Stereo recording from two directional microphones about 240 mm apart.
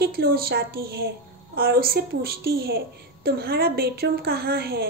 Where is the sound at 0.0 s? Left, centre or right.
Right.